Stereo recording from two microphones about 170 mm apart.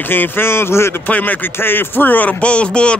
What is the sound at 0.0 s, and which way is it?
Speech, 10° left (ahead or behind).